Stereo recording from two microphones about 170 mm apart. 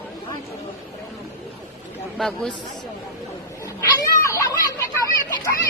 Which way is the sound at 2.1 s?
Centre (ahead or behind).